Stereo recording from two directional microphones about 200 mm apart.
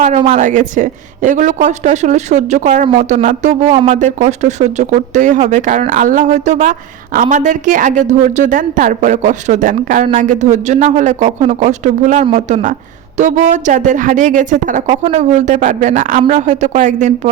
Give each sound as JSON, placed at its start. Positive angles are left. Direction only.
{"t": 0.2, "sound": "a woman's voice", "side_deg": -35}